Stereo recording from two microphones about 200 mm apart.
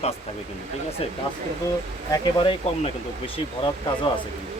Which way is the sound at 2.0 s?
20° left (ahead or behind).